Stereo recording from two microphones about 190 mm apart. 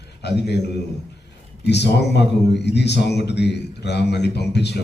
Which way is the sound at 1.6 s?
60° left (ahead or behind).